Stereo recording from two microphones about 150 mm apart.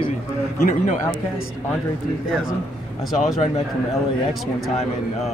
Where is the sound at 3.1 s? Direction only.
Centre (ahead or behind).